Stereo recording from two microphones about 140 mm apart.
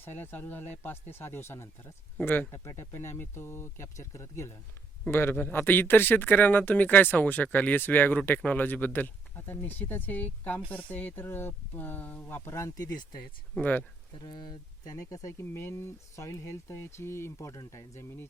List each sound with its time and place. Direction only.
0.0 s speech: 15° left (ahead or behind)
13.6 s speech: 10° left (ahead or behind)
14.2 s speech: 30° left (ahead or behind)